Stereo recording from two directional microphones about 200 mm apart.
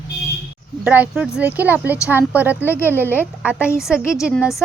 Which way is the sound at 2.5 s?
10° left (ahead or behind).